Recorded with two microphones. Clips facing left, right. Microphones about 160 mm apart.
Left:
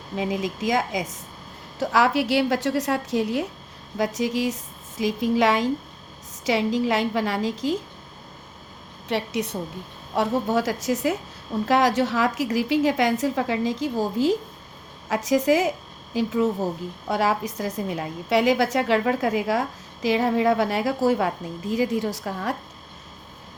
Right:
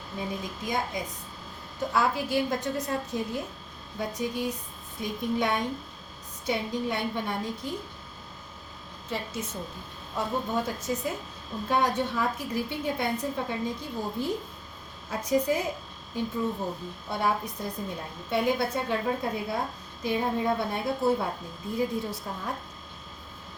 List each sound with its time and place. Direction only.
0.2 s a woman's voice: 90° left
3.9 s a woman's voice: 90° left
9.0 s a woman's voice: 70° left (ahead or behind)
10.2 s a woman's voice: 85° left